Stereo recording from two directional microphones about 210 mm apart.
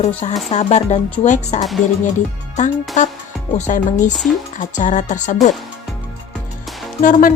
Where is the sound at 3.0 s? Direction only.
35° left (ahead or behind).